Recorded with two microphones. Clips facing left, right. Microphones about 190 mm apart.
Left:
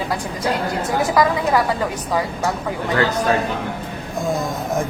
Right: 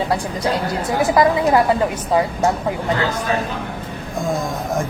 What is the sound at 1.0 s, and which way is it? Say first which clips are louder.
A woman's voice: right 3 dB; 20° right (ahead or behind).